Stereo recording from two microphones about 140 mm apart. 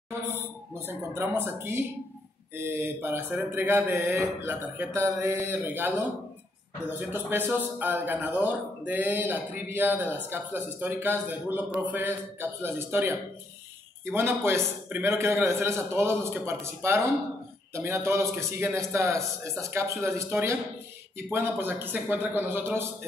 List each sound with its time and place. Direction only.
0.7 s a man's voice: 15° right (ahead or behind)